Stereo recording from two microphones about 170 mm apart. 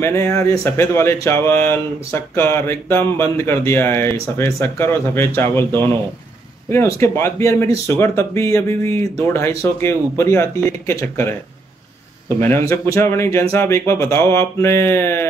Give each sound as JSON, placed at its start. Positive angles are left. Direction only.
{"t": 0.0, "sound": "speech", "side_deg": 15}
{"t": 12.4, "sound": "speech", "side_deg": 15}